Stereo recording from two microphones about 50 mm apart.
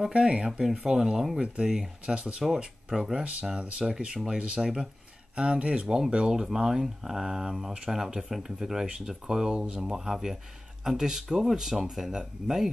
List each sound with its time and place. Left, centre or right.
0.0 s speech: centre
4.6 s speech: centre
5.3 s speech: right